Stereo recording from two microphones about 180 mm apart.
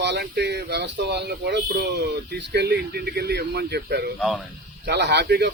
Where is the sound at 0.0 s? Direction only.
70° right (ahead or behind).